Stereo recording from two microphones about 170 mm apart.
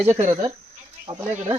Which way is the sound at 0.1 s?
45° right (ahead or behind).